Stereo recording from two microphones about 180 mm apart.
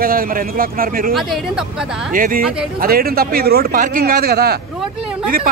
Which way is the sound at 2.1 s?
50° right (ahead or behind).